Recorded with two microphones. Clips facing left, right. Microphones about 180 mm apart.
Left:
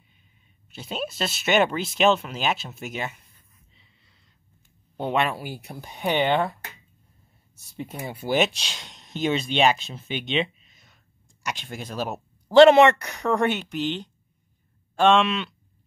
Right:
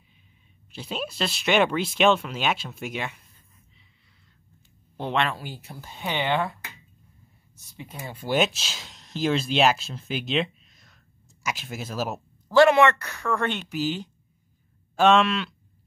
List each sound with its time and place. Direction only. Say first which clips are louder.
0.7 s speech: left 1 dB; centre (ahead or behind)
4.9 s speech: left 2 dB; 10° left (ahead or behind)
8.1 s speech: left 1 dB; 5° left (ahead or behind)
10.0 s a sound: even; centre (ahead or behind)
11.4 s speech: right 1 dB; 5° right (ahead or behind)
12.4 s speech: left 4 dB; 20° left (ahead or behind)
13.7 s speech: even; 5° right (ahead or behind)